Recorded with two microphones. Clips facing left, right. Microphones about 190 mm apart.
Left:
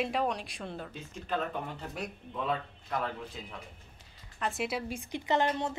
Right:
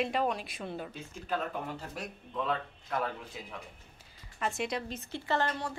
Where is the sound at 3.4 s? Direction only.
10° right (ahead or behind).